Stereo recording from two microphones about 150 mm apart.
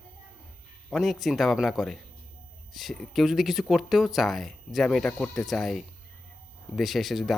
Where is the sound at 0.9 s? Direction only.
Centre (ahead or behind).